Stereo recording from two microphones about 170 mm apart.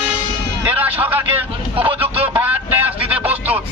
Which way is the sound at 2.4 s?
10° right (ahead or behind).